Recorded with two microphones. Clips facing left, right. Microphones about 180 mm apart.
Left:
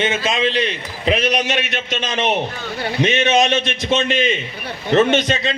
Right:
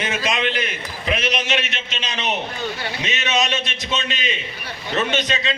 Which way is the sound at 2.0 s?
50° left (ahead or behind).